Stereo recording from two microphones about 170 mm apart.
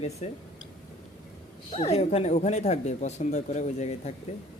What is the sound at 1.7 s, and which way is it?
Speech, 35° left (ahead or behind).